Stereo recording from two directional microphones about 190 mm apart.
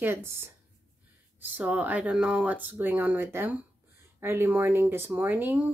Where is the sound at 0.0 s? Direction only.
10° right (ahead or behind).